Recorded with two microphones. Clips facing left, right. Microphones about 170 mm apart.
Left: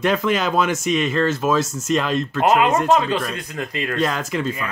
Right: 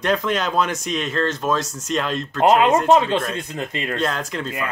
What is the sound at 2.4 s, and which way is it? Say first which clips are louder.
Speech: right 2 dB; 25° right (ahead or behind).